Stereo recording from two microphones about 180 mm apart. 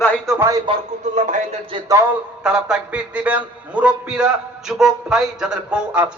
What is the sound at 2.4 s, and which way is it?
A man's voice, 5° right (ahead or behind).